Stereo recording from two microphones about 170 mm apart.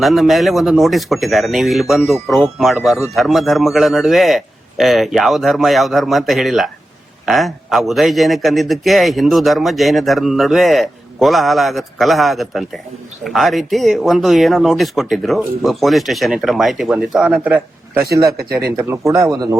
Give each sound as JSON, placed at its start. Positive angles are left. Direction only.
{"t": 0.0, "sound": "speech", "side_deg": 0}